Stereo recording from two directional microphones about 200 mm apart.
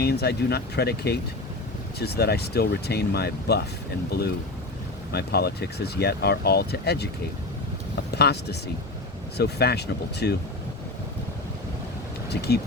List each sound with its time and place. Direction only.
0.0 s speech: 50° left (ahead or behind)
5.1 s speech: 55° left (ahead or behind)
8.1 s speech: 55° left (ahead or behind)
12.3 s speech: 55° left (ahead or behind)